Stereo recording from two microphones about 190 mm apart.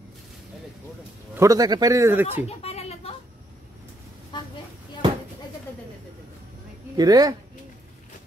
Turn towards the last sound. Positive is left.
turn(degrees=-20)  # may be behind; listen again after turning